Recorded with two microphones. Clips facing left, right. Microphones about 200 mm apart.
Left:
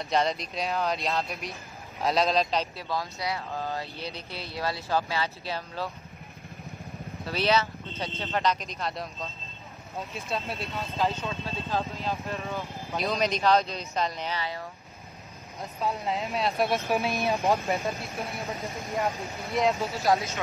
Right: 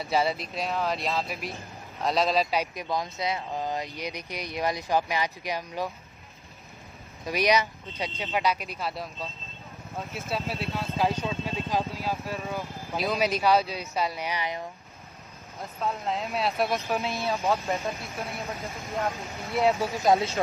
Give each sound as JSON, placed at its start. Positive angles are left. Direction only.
{"t": 0.0, "sound": "speech", "side_deg": -5}
{"t": 7.2, "sound": "speech", "side_deg": -15}
{"t": 12.3, "sound": "speech", "side_deg": 0}
{"t": 15.8, "sound": "speech", "side_deg": 0}
{"t": 16.9, "sound": "speech", "side_deg": 15}
{"t": 17.8, "sound": "speech", "side_deg": 0}
{"t": 18.9, "sound": "speech", "side_deg": 15}
{"t": 19.8, "sound": "speech", "side_deg": -15}